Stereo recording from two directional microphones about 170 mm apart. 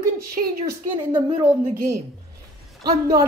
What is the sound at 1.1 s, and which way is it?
Speech, 10° right (ahead or behind).